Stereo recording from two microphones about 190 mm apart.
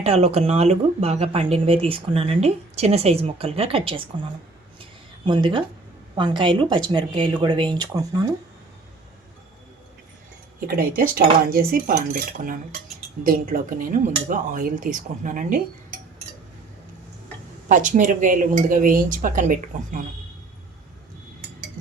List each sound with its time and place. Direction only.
0.0 s speech: 30° right (ahead or behind)
4.8 s a sound: 25° right (ahead or behind)
6.1 s speech: 25° right (ahead or behind)
10.7 s speech: 50° right (ahead or behind)
17.7 s speech: 45° right (ahead or behind)